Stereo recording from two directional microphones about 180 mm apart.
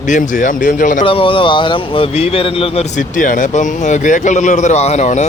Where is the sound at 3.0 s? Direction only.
45° left (ahead or behind).